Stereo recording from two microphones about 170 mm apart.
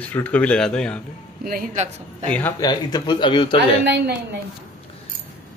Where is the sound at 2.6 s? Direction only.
25° left (ahead or behind).